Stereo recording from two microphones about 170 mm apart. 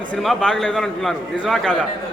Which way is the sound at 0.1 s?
Centre (ahead or behind).